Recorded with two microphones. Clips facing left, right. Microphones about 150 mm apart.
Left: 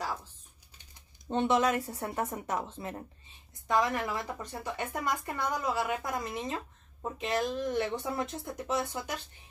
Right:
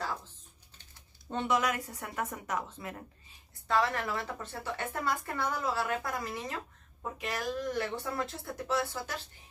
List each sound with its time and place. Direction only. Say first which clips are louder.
1.3 s speech: left 4 dB; 25° left (ahead or behind)
3.6 s speech: left 1 dB; 15° left (ahead or behind)